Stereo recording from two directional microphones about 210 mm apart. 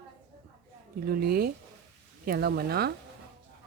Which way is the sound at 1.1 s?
45° right (ahead or behind).